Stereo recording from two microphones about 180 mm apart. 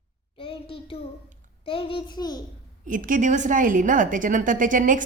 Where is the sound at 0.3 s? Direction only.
30° left (ahead or behind).